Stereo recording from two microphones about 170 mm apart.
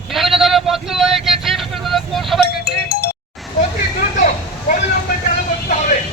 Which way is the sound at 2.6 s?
65° left (ahead or behind).